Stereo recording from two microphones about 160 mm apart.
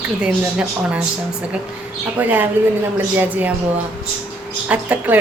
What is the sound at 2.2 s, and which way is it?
A woman's voice, 10° right (ahead or behind).